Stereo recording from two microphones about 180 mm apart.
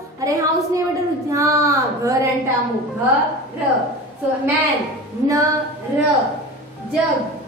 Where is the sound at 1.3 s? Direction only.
15° right (ahead or behind).